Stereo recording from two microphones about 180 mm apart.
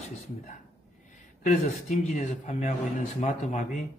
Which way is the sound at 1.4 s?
45° left (ahead or behind).